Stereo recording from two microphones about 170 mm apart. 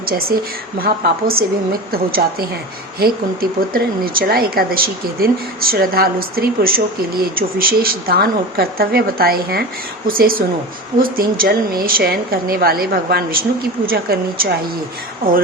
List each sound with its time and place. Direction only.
0.0 s speech: 60° right (ahead or behind)